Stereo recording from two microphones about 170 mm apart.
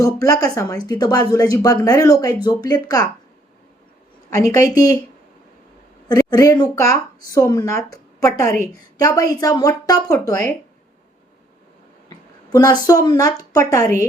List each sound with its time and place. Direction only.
0.0 s speech: 20° left (ahead or behind)
4.3 s speech: 20° left (ahead or behind)
6.1 s a woman's voice: 20° left (ahead or behind)
12.0 s a sound: 20° left (ahead or behind)
12.9 s speech: 20° left (ahead or behind)